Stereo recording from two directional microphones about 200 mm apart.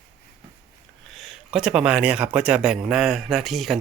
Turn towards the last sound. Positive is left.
turn(degrees=0)  # may be behind; listen again after turning